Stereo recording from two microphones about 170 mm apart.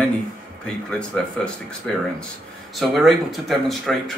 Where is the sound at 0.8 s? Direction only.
5° left (ahead or behind).